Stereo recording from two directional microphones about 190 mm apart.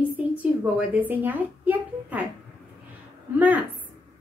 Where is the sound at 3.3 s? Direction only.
10° right (ahead or behind).